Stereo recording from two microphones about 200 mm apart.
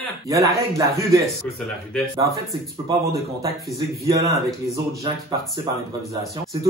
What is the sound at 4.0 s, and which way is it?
Speech, 15° right (ahead or behind).